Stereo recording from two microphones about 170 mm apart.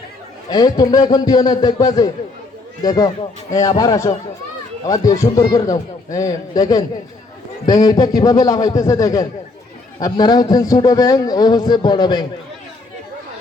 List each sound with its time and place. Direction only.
0.5 s a man's voice: 25° left (ahead or behind)